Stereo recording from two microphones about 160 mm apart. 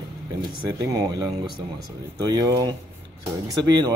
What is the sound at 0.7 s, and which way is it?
A man's voice, 20° right (ahead or behind).